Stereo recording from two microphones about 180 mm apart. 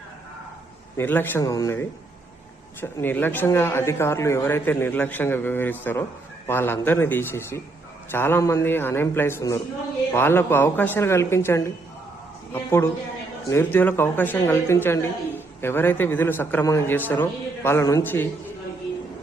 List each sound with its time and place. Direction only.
0.9 s a man's voice: 10° left (ahead or behind)
2.8 s a man's voice: 10° left (ahead or behind)